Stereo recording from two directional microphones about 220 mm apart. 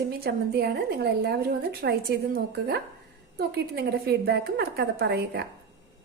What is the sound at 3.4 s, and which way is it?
A woman's voice, 45° right (ahead or behind).